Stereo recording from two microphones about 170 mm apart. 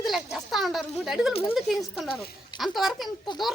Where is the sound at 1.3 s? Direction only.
35° left (ahead or behind).